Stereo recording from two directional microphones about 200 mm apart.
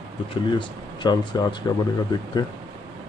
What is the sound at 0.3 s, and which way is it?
Speech, 25° left (ahead or behind).